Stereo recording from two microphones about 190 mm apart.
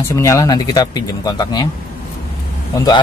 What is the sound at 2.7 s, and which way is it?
Speech, 20° left (ahead or behind).